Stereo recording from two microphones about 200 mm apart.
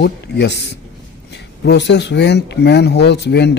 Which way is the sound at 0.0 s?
60° left (ahead or behind).